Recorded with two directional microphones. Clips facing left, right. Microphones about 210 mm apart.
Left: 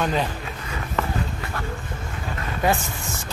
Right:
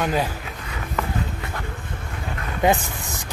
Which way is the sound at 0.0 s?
10° right (ahead or behind).